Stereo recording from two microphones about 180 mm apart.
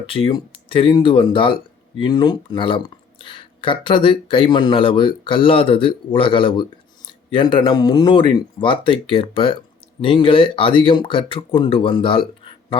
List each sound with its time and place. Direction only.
0.0 s speech: 30° left (ahead or behind)